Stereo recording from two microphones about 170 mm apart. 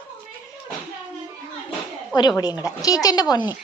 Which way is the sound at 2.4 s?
20° left (ahead or behind).